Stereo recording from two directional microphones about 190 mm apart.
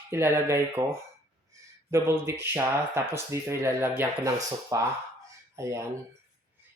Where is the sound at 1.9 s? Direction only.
15° right (ahead or behind).